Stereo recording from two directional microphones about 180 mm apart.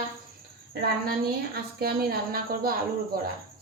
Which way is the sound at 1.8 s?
55° right (ahead or behind).